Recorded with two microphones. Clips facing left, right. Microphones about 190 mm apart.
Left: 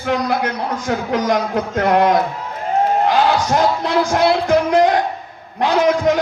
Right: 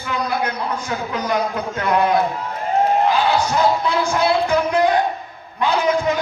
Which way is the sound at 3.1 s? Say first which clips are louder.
Left 2 dB; 80° left.